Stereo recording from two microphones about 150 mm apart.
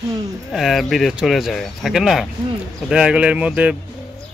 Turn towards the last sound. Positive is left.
turn(degrees=-5)  # may be behind; listen again after turning